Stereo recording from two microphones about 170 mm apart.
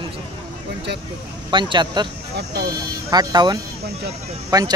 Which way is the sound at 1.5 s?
25° right (ahead or behind).